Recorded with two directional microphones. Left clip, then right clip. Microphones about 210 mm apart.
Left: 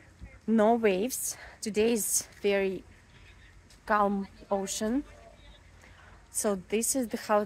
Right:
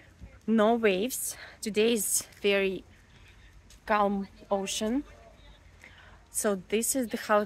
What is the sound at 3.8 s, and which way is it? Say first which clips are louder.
A woman's voice: even; centre (ahead or behind).